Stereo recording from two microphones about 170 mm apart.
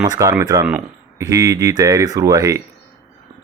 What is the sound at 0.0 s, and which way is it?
Speech, 20° right (ahead or behind).